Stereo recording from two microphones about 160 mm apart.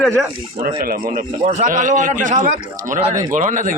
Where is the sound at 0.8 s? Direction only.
65° right (ahead or behind).